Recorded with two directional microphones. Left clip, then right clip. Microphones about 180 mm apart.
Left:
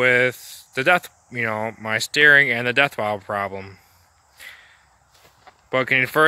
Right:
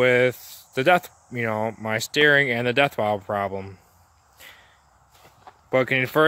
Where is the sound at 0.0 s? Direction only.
10° right (ahead or behind).